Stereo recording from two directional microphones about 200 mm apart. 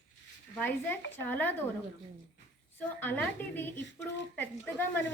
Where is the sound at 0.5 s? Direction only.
10° left (ahead or behind).